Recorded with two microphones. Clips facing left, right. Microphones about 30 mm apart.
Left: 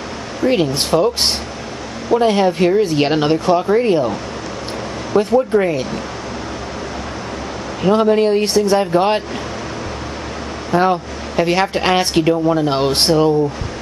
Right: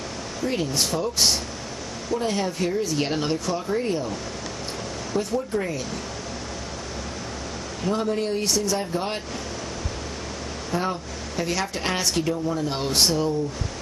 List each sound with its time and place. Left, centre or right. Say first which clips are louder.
0.4 s speech: left 9 dB; left
7.8 s speech: left 12 dB; left
10.7 s speech: left 12 dB; left